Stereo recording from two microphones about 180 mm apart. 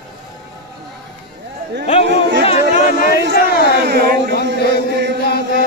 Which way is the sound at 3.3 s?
60° left (ahead or behind).